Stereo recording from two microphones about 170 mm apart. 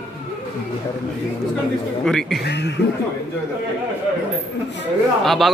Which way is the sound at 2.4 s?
80° left.